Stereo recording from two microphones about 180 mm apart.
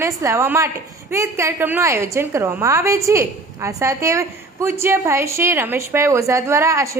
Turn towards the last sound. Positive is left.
turn(degrees=-15)  # may be behind; listen again after turning